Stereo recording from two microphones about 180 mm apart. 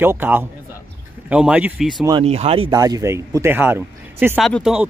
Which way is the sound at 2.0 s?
25° right (ahead or behind).